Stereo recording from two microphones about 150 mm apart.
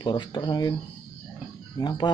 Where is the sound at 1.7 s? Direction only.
30° left (ahead or behind).